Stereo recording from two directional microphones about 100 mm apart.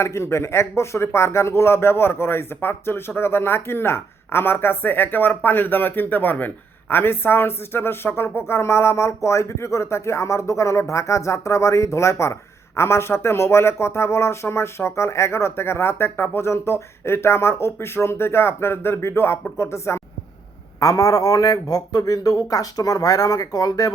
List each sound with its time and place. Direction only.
0.0 s a man's voice: 25° left (ahead or behind)